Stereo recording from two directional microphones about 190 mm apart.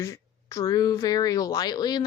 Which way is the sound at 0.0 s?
15° left (ahead or behind).